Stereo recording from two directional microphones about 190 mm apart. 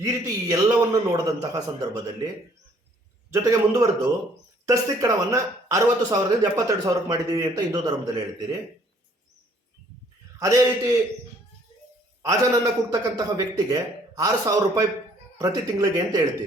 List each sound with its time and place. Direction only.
0.0 s speech: 15° right (ahead or behind)
3.3 s a man's voice: 15° right (ahead or behind)
10.4 s a man's voice: 15° right (ahead or behind)
12.2 s a man's voice: 15° right (ahead or behind)